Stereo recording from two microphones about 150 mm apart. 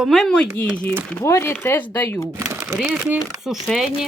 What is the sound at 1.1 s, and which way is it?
Speech, 15° left (ahead or behind).